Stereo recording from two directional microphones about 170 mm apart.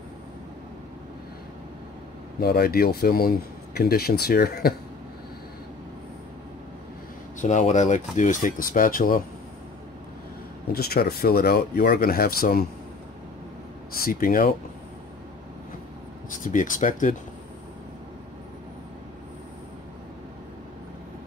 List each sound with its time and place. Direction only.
2.4 s speech: 65° left (ahead or behind)
7.3 s speech: 45° left (ahead or behind)
10.7 s speech: 65° left (ahead or behind)
14.0 s speech: 55° left (ahead or behind)
16.3 s speech: 50° left (ahead or behind)